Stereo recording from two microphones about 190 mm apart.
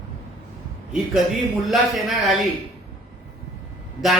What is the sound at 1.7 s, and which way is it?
Speech, centre (ahead or behind).